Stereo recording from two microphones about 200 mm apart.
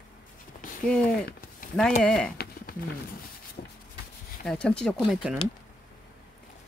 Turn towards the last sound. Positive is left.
turn(degrees=0)  # may be behind; listen again after turning